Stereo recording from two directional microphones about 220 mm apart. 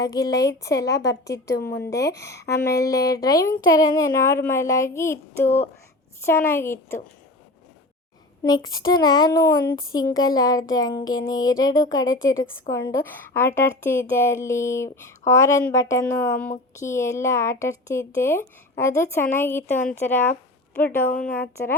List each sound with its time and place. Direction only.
0.0 s speech: 15° left (ahead or behind)
8.4 s speech: 20° left (ahead or behind)
21.1 s speech: 40° left (ahead or behind)
21.3 s speech: 10° left (ahead or behind)